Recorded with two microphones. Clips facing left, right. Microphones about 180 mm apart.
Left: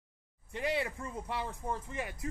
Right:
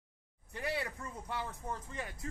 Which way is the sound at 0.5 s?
20° left (ahead or behind).